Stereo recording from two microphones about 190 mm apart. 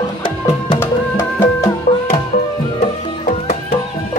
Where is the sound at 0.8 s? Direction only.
10° left (ahead or behind).